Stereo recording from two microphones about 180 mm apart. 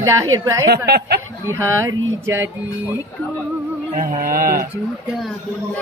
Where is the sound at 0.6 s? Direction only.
65° right (ahead or behind).